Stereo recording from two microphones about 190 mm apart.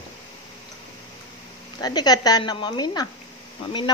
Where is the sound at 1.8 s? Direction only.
20° left (ahead or behind).